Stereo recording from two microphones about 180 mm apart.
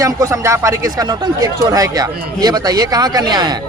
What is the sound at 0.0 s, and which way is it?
A man's voice, 15° right (ahead or behind).